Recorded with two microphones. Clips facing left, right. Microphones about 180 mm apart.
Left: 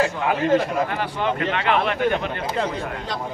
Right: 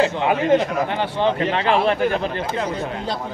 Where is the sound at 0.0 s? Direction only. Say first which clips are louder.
Right 2 dB; 20° right (ahead or behind).